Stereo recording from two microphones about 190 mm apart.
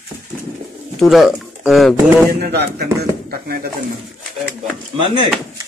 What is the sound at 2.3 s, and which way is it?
Speech, 55° right (ahead or behind).